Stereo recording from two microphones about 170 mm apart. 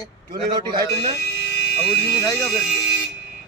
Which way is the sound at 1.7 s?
5° left (ahead or behind).